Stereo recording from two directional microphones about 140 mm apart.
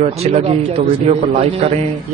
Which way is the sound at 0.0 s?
45° right (ahead or behind).